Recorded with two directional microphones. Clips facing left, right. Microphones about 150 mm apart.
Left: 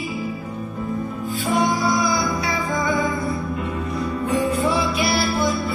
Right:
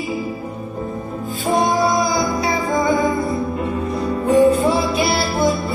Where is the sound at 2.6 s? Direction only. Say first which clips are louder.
Right 5 dB; 30° right (ahead or behind).